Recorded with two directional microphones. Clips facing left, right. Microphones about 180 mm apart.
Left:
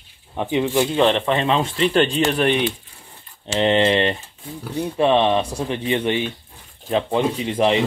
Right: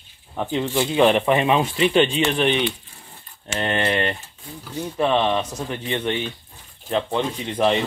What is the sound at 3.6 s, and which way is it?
Speech, 20° left (ahead or behind).